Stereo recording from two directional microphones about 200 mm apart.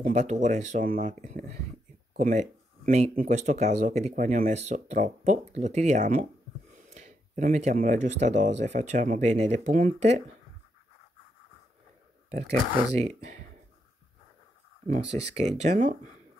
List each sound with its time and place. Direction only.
0.0 s speech: 35° right (ahead or behind)
12.3 s speech: 30° right (ahead or behind)
15.0 s speech: 35° right (ahead or behind)